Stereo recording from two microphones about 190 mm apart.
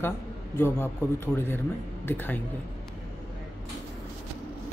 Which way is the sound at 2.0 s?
10° left (ahead or behind).